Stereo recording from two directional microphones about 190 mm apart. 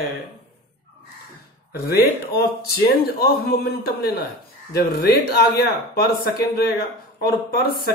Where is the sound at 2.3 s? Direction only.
55° left (ahead or behind).